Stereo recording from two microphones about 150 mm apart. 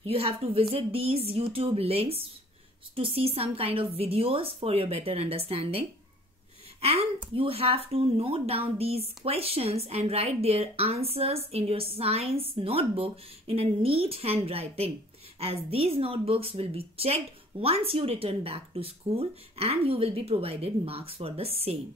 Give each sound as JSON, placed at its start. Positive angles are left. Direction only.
{"t": 0.0, "sound": "speech", "side_deg": -40}